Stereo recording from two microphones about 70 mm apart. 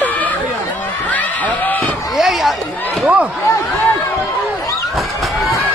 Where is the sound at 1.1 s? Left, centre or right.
Left.